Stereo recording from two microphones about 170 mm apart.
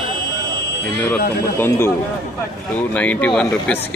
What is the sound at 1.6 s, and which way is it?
Speech, 15° left (ahead or behind).